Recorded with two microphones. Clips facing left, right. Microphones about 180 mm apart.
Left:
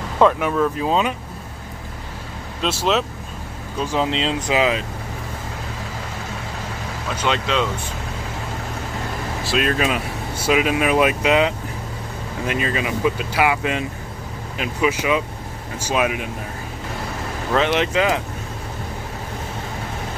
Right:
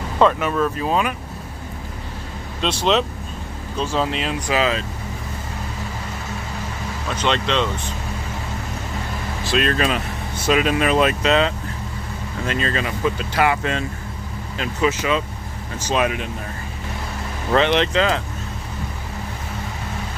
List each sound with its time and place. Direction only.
0.2 s speech: 10° left (ahead or behind)
2.6 s speech: 5° left (ahead or behind)
3.8 s speech: 15° left (ahead or behind)
7.2 s speech: 10° left (ahead or behind)
9.4 s speech: 5° left (ahead or behind)
17.6 s speech: 5° left (ahead or behind)